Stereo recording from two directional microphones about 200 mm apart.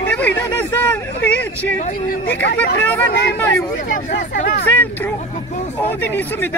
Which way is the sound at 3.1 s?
50° left (ahead or behind).